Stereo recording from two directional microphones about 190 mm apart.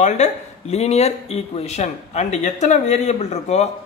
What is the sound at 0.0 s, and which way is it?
Speech, 35° left (ahead or behind).